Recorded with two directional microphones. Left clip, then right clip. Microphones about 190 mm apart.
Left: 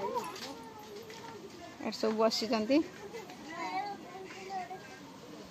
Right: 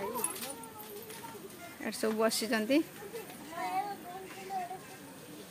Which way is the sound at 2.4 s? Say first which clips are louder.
Even; 10° right (ahead or behind).